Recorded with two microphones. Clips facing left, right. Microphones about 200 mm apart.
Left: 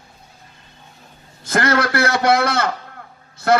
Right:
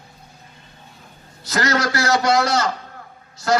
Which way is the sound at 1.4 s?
55° left (ahead or behind).